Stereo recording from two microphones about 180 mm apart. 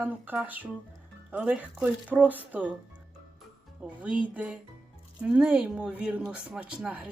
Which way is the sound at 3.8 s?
5° right (ahead or behind).